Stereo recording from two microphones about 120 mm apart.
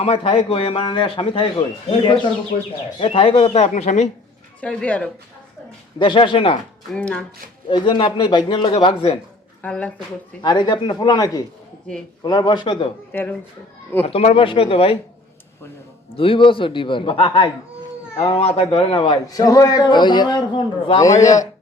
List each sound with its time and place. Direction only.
0.0 s a man's voice: 55° left (ahead or behind); by 4.1 s 80° left
4.6 s speech: 10° left (ahead or behind)
6.0 s a man's voice: 45° left (ahead or behind)
6.9 s speech: 10° left (ahead or behind)
7.7 s a man's voice: 45° left (ahead or behind)
9.6 s speech: 10° left (ahead or behind)
10.4 s a man's voice: 40° left (ahead or behind)
13.1 s speech: 15° left (ahead or behind)
14.0 s a man's voice: 60° left (ahead or behind)
16.1 s a man's voice: 50° left (ahead or behind)
19.3 s a man's voice: 30° left (ahead or behind)
21.0 s a man's voice: 25° left (ahead or behind)